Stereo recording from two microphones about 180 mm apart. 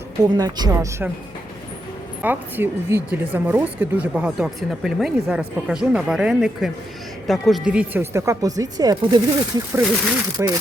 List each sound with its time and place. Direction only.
0.2 s speech: 20° right (ahead or behind)
2.2 s speech: 10° right (ahead or behind)